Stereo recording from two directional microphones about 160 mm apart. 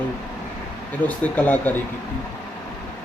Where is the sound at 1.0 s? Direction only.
10° left (ahead or behind).